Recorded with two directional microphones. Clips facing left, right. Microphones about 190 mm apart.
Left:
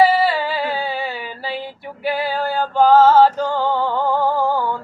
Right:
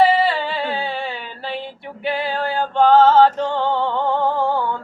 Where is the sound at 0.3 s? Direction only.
5° left (ahead or behind).